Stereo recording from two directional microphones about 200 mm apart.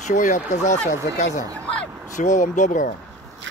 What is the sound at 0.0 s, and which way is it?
Speech, 40° left (ahead or behind).